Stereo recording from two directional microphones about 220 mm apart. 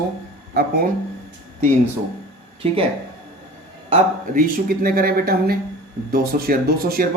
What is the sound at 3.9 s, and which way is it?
Speech, 40° right (ahead or behind).